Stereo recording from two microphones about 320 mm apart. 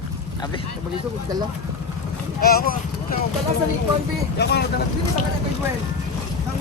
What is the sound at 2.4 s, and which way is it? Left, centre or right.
Speech, left.